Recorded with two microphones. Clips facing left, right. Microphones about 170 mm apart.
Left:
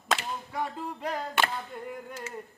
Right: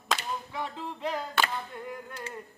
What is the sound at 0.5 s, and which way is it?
Music, 45° left (ahead or behind).